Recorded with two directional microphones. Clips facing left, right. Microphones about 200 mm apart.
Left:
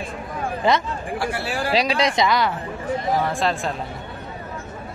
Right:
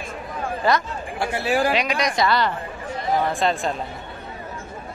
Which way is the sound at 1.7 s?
30° left (ahead or behind).